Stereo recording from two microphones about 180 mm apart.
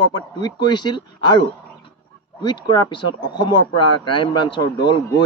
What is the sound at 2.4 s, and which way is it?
Speech, 25° left (ahead or behind).